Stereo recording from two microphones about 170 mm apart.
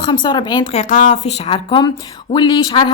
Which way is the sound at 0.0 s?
25° left (ahead or behind).